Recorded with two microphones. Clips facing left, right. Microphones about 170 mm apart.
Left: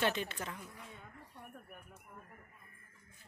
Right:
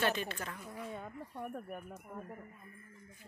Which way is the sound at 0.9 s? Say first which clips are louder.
Right 10 dB; 50° right (ahead or behind).